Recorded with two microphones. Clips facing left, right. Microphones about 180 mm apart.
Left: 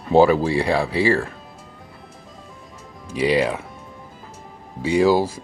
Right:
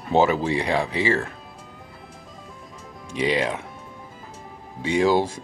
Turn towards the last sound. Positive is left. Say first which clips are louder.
# left 3 dB
turn(degrees=5)  # may be behind; listen again after turning